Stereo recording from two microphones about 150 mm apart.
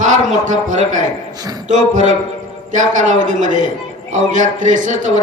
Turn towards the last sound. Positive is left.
turn(degrees=-55)  # may be behind; listen again after turning